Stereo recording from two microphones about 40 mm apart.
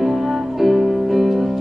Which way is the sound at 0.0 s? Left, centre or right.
Centre.